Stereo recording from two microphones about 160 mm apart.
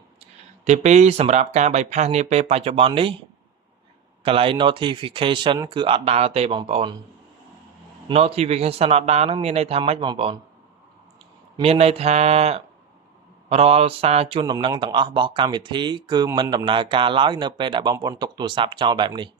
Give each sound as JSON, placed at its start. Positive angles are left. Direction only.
{"t": 0.6, "sound": "speech", "side_deg": -45}
{"t": 4.2, "sound": "speech", "side_deg": -35}
{"t": 8.0, "sound": "speech", "side_deg": -40}
{"t": 11.6, "sound": "speech", "side_deg": -40}